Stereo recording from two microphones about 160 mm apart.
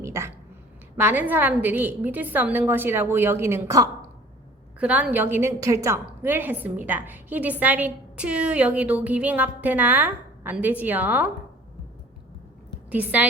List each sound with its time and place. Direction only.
0.0 s a sound: 15° right (ahead or behind)
0.9 s a woman's voice: 10° right (ahead or behind)
12.9 s a woman's voice: 10° right (ahead or behind)